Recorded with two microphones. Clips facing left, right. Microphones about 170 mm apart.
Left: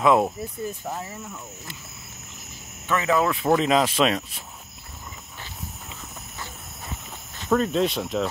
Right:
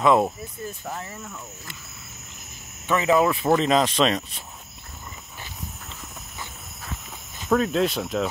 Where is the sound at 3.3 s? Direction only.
Centre (ahead or behind).